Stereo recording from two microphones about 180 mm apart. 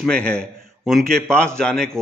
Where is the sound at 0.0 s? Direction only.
5° left (ahead or behind).